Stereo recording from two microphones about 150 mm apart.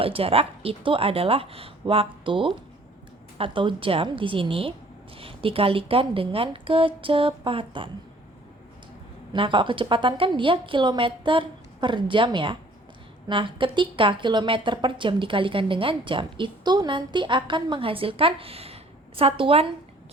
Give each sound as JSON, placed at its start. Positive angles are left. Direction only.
{"t": 0.0, "sound": "a woman's voice", "side_deg": -40}
{"t": 9.3, "sound": "a woman's voice", "side_deg": -35}